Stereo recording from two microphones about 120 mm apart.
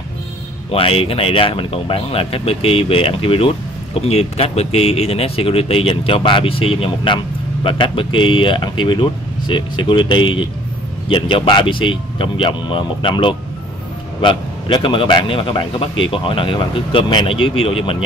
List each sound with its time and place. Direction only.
0.7 s speech: 50° left (ahead or behind)